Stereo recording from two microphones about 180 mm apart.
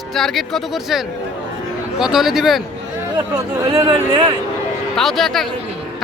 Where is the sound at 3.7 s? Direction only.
30° right (ahead or behind).